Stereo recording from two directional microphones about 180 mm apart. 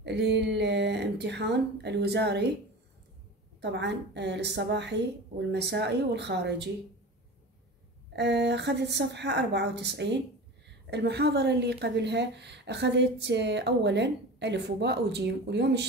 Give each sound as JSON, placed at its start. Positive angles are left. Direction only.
{"t": 0.0, "sound": "a woman's voice", "side_deg": -75}
{"t": 3.7, "sound": "a woman's voice", "side_deg": -70}
{"t": 8.2, "sound": "a woman's voice", "side_deg": -70}